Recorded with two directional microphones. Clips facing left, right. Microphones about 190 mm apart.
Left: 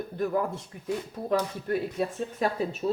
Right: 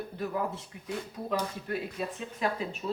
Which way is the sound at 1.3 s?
50° left (ahead or behind).